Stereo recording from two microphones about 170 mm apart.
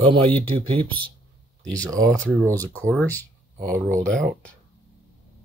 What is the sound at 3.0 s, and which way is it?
Speech, 10° left (ahead or behind).